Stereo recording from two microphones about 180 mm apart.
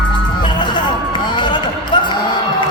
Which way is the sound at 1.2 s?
25° left (ahead or behind).